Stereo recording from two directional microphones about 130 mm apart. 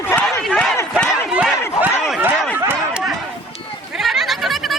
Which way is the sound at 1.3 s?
10° right (ahead or behind).